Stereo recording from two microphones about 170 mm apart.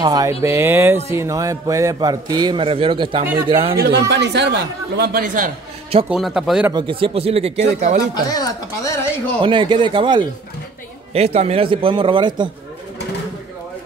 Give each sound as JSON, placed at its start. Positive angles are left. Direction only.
{"t": 0.0, "sound": "a man's voice", "side_deg": -25}
{"t": 3.7, "sound": "a woman's voice", "side_deg": -70}
{"t": 4.1, "sound": "a woman's voice", "side_deg": -90}
{"t": 6.0, "sound": "a man's voice", "side_deg": -5}
{"t": 6.7, "sound": "speech", "side_deg": -30}
{"t": 8.1, "sound": "speech", "side_deg": 25}
{"t": 9.4, "sound": "a man's voice", "side_deg": -30}
{"t": 11.1, "sound": "speech", "side_deg": -40}